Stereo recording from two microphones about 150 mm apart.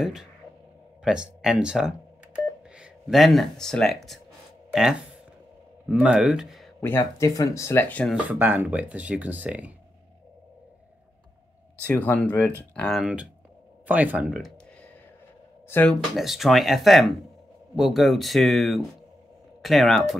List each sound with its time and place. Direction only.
0.0 s speech: 5° right (ahead or behind)
5.9 s speech: 5° right (ahead or behind)
7.0 s speech: 20° left (ahead or behind)
8.3 s speech: 10° right (ahead or behind)
11.9 s speech: 10° left (ahead or behind); by 14.5 s 5° right (ahead or behind)
15.9 s speech: centre (ahead or behind)